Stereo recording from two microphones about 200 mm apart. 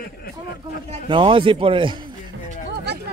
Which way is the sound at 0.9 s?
25° right (ahead or behind).